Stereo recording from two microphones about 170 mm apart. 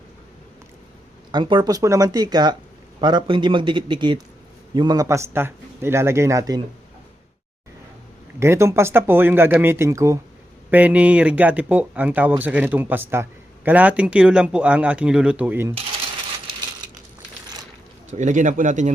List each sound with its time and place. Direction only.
1.3 s speech: 30° right (ahead or behind)
8.4 s speech: 15° right (ahead or behind)
18.1 s speech: 45° right (ahead or behind)